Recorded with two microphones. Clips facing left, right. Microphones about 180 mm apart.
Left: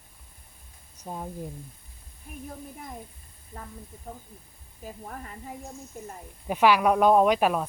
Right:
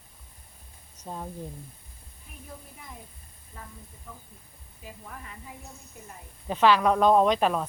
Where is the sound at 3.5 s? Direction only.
45° left (ahead or behind).